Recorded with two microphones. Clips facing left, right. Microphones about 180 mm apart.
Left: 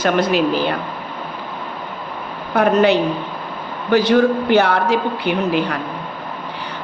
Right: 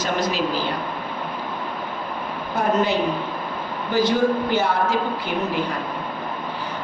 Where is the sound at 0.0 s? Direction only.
60° left (ahead or behind).